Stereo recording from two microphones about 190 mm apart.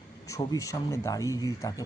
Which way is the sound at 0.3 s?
15° left (ahead or behind).